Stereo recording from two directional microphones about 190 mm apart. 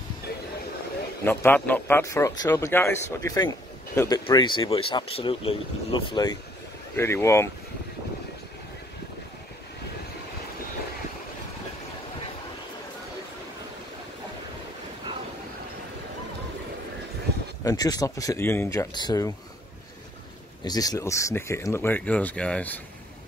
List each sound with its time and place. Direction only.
1.2 s a man's voice: 10° left (ahead or behind)
7.0 s speech: 15° left (ahead or behind)
17.6 s a man's voice: 20° left (ahead or behind)
20.6 s speech: 20° left (ahead or behind)